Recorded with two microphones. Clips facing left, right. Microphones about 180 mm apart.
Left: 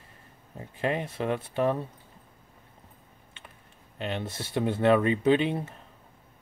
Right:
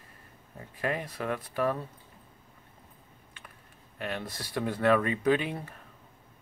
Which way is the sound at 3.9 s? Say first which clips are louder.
Left 3 dB; 25° left (ahead or behind).